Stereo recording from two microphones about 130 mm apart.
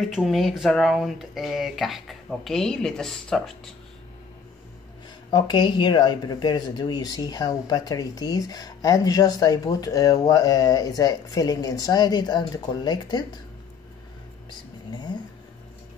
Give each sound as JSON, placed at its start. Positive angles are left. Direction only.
{"t": 0.0, "sound": "speech", "side_deg": 0}
{"t": 5.3, "sound": "speech", "side_deg": 35}
{"t": 14.9, "sound": "a sound", "side_deg": 35}